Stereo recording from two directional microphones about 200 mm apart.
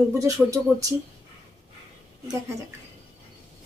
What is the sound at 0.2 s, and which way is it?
Speech, 15° right (ahead or behind).